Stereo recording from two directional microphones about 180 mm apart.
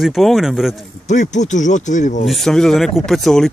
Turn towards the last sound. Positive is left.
turn(degrees=0)  # may be behind; listen again after turning